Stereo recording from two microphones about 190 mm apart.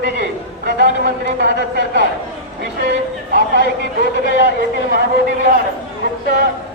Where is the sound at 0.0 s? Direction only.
60° right (ahead or behind).